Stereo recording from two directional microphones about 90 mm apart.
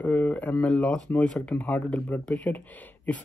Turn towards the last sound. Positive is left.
turn(degrees=20)  # may be behind; listen again after turning